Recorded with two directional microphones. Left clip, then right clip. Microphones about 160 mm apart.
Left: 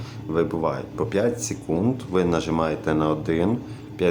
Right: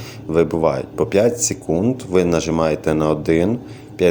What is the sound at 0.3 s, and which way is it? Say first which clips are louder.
Speech: right 7 dB; 25° right (ahead or behind).